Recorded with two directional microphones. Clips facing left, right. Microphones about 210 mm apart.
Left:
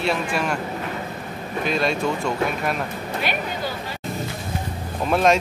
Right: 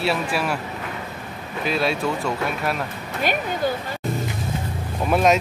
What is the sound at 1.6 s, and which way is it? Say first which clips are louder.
Speech: even; 5° right (ahead or behind).